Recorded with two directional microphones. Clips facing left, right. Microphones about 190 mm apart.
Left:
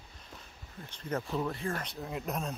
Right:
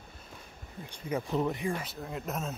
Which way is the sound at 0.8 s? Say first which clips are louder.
Right 2 dB; 10° right (ahead or behind).